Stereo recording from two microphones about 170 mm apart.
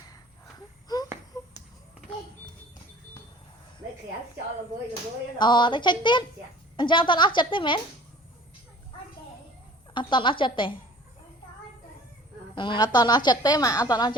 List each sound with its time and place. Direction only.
0.9 s a sound: 20° left (ahead or behind)
5.4 s a woman's voice: 25° left (ahead or behind)
9.9 s a woman's voice: 30° left (ahead or behind)
12.5 s a woman's voice: 25° left (ahead or behind)